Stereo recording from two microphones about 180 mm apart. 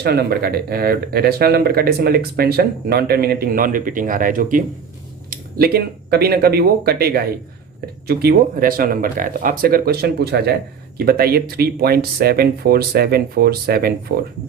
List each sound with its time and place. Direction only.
0.0 s speech: 60° right (ahead or behind)
5.5 s speech: 60° right (ahead or behind)